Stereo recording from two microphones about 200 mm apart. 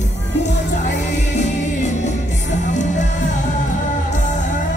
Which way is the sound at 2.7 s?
35° left (ahead or behind).